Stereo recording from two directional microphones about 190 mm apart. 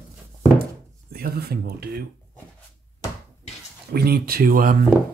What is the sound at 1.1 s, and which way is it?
Speech, 55° right (ahead or behind).